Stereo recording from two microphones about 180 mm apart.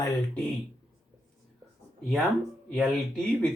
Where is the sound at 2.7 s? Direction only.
5° left (ahead or behind).